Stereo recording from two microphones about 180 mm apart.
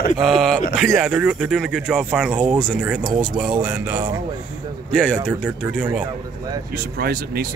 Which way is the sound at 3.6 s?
15° right (ahead or behind).